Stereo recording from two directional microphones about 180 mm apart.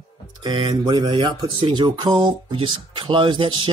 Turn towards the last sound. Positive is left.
turn(degrees=-25)  # may be behind; listen again after turning